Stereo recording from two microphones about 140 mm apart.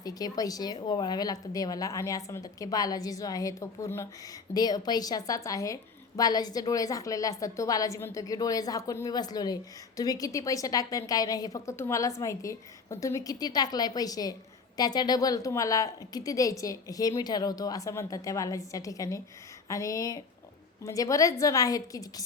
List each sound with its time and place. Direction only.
0.0 s a woman's voice: 25° left (ahead or behind)